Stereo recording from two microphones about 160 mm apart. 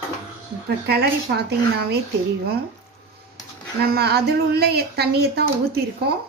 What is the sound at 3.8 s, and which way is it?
A woman's voice, 80° right.